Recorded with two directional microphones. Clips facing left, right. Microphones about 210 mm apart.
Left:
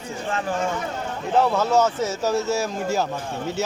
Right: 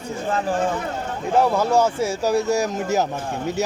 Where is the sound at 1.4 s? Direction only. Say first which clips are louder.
Right 1 dB; 10° right (ahead or behind).